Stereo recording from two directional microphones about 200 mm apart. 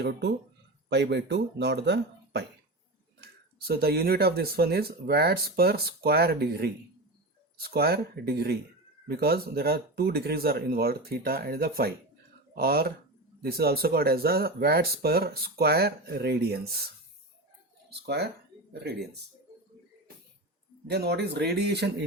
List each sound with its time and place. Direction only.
0.0 s speech: 55° right (ahead or behind)
20.8 s speech: 55° right (ahead or behind)